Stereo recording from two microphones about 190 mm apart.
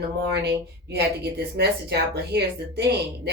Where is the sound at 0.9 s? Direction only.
60° right (ahead or behind).